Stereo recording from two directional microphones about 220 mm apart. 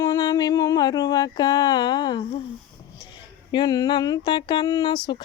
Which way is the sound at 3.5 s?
20° left (ahead or behind).